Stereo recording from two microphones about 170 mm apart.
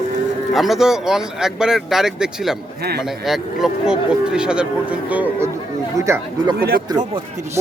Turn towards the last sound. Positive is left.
turn(degrees=-20)  # may be behind; listen again after turning